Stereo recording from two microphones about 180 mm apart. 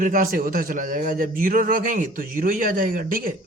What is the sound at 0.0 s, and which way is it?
A man's voice, 50° right (ahead or behind).